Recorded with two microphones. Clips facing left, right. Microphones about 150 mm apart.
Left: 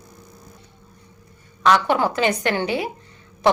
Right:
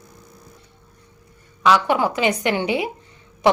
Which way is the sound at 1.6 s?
5° right (ahead or behind).